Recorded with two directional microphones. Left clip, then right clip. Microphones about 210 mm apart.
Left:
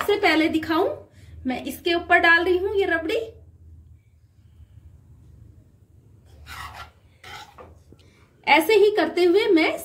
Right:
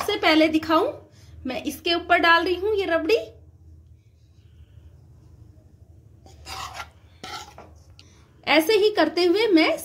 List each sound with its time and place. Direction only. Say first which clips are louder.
0.1 s a woman's voice: right 1 dB; 40° right (ahead or behind)
8.5 s a woman's voice: left 2 dB; 40° right (ahead or behind)